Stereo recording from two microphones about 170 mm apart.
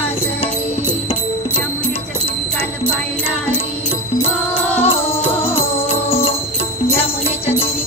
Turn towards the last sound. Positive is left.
turn(degrees=35)  # may be behind; listen again after turning